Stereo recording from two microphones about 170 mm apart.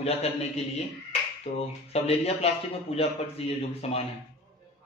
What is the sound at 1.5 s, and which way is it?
A man's voice, 40° left (ahead or behind).